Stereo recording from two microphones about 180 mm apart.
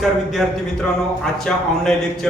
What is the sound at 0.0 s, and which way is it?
A man's voice, centre (ahead or behind).